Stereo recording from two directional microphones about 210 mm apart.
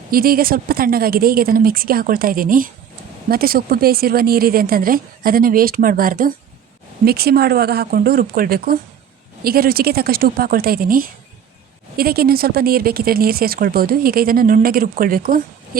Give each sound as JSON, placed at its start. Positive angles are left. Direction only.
{"t": 0.1, "sound": "speech", "side_deg": -45}